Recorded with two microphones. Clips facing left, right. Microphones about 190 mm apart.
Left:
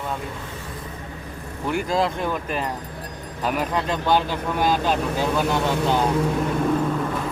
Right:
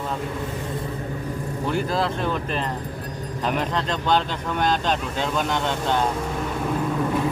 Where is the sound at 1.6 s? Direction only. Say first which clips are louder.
Left 2 dB; 15° left (ahead or behind).